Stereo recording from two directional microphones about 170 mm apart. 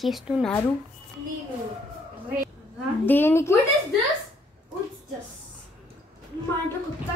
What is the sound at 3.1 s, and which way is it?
Speech, 15° left (ahead or behind).